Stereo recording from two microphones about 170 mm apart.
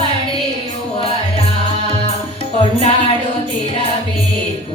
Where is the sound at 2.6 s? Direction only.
35° left (ahead or behind).